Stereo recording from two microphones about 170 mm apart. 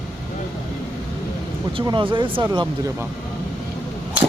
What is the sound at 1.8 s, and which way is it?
Speech, 25° right (ahead or behind).